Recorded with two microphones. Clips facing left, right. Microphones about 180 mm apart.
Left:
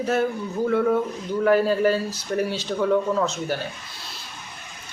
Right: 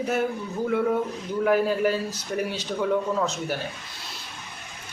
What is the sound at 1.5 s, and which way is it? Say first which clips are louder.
Speech: left 3 dB; 10° right (ahead or behind).